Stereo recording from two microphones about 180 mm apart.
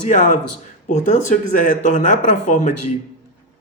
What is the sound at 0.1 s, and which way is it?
Speech, 45° left (ahead or behind).